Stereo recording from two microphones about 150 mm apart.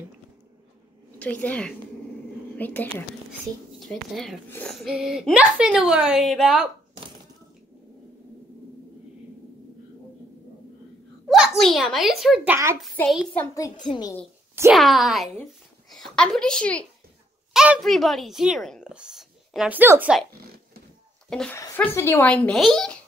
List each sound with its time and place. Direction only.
1.2 s speech: 10° left (ahead or behind)
4.5 s speech: 10° left (ahead or behind)
4.7 s speech: 5° right (ahead or behind)
11.2 s a child's voice: centre (ahead or behind)
13.6 s a child's voice: 30° left (ahead or behind)
14.7 s speech: centre (ahead or behind)
21.3 s speech: 5° left (ahead or behind)
21.5 s speech: 15° left (ahead or behind)